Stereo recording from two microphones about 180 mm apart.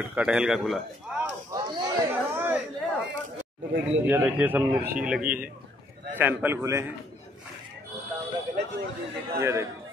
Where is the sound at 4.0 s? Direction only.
10° right (ahead or behind).